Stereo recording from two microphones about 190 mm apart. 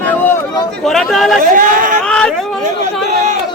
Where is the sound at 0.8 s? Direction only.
Centre (ahead or behind).